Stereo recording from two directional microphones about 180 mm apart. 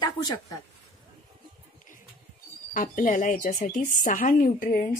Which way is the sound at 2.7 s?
50° left (ahead or behind).